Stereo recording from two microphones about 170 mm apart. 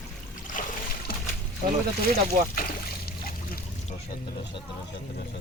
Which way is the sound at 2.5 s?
60° left (ahead or behind).